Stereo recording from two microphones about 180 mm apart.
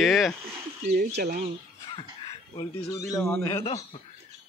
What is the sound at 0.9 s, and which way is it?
Speech, 55° right (ahead or behind).